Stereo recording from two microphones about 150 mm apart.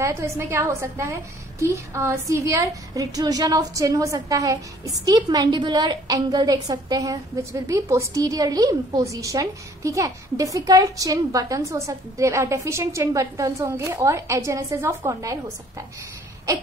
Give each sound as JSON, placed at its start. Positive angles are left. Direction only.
{"t": 0.0, "sound": "a woman's voice", "side_deg": -20}